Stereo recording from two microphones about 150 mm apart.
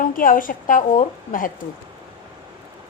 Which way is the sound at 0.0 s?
65° left (ahead or behind).